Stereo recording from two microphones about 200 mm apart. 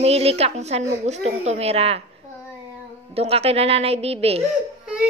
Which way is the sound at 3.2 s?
30° right (ahead or behind).